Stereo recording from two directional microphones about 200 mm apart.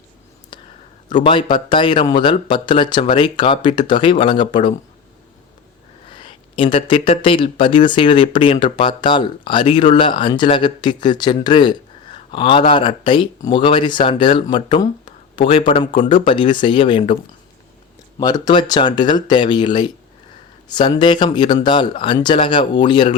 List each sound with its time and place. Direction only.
0.5 s a sound: 25° left (ahead or behind)
1.2 s speech: 25° left (ahead or behind)
6.1 s speech: 25° left (ahead or behind)
18.2 s speech: 20° left (ahead or behind)